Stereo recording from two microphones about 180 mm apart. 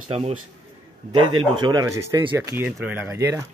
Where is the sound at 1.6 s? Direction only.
20° right (ahead or behind).